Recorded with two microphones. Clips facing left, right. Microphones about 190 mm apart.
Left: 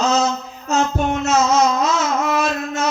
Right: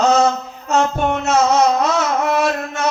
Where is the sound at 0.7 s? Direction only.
60° right (ahead or behind).